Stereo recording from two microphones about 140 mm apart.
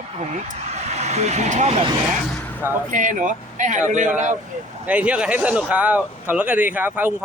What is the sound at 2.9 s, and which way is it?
Speech, 65° right (ahead or behind).